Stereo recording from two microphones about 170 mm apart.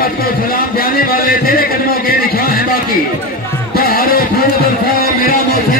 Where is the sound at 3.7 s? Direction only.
60° left (ahead or behind).